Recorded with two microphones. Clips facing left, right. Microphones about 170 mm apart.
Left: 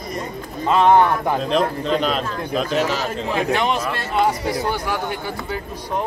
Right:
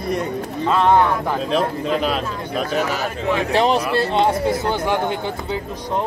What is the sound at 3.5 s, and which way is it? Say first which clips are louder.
Speech: right 7 dB; 35° right (ahead or behind).